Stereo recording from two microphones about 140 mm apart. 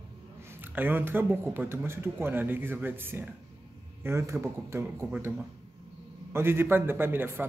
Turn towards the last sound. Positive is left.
turn(degrees=-15)  # may be behind; listen again after turning